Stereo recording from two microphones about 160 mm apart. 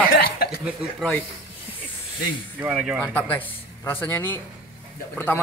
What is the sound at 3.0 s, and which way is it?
A man's voice, 10° left (ahead or behind).